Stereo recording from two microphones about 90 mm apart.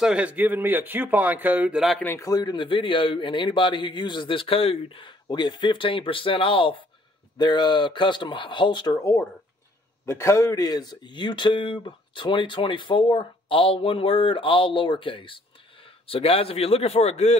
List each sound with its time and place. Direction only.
0.0 s a man's voice: 15° right (ahead or behind)
2.1 s a man's voice: 45° left (ahead or behind); by 6.8 s 75° left (ahead or behind)
7.3 s speech: 55° left (ahead or behind)
8.9 s speech: 35° left (ahead or behind); by 15.4 s 70° left (ahead or behind)
16.1 s a man's voice: 90° left